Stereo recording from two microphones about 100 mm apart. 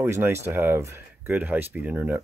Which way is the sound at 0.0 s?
25° right (ahead or behind).